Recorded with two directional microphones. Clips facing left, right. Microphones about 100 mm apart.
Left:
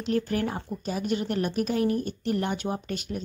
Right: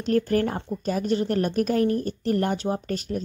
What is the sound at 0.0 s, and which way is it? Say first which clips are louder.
A woman's voice: right 4 dB; 45° right (ahead or behind).